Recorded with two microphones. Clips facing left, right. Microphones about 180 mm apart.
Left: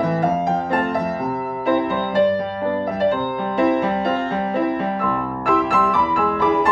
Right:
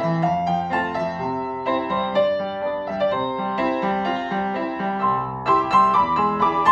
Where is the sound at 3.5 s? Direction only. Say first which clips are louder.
Left 5 dB; 55° left (ahead or behind).